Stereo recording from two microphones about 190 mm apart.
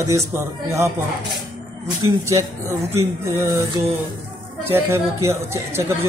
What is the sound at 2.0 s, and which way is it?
Speech, 15° right (ahead or behind).